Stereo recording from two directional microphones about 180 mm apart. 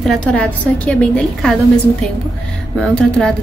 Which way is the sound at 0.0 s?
5° left (ahead or behind).